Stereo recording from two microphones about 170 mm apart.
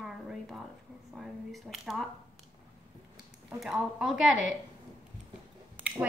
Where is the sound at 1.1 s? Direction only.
Centre (ahead or behind).